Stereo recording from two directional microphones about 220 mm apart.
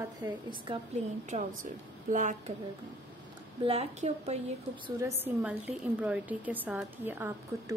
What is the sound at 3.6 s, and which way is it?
Speech, 30° right (ahead or behind).